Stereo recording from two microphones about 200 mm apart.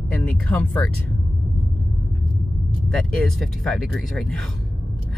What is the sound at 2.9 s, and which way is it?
Speech, centre (ahead or behind).